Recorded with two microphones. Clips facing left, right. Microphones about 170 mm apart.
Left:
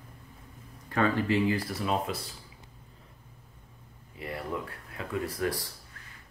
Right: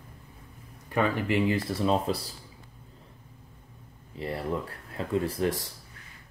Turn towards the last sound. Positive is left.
turn(degrees=-20)  # may be behind; listen again after turning